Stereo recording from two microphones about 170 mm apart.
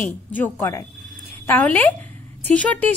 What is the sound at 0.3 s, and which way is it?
Speech, 10° left (ahead or behind).